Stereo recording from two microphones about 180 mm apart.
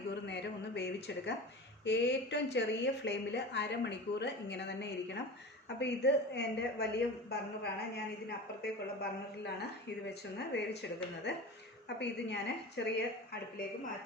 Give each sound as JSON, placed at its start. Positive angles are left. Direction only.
{"t": 0.1, "sound": "a sound", "side_deg": 75}
{"t": 1.8, "sound": "a woman's voice", "side_deg": 75}
{"t": 11.9, "sound": "speech", "side_deg": 70}